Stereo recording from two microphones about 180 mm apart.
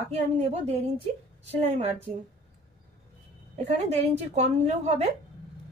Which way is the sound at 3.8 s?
35° right (ahead or behind).